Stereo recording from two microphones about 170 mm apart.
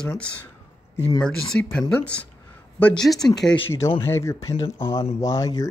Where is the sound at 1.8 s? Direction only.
10° left (ahead or behind).